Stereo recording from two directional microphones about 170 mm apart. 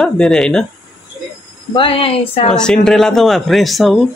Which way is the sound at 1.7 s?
30° left (ahead or behind).